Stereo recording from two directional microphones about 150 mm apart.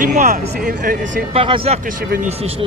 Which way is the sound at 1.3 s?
40° right (ahead or behind).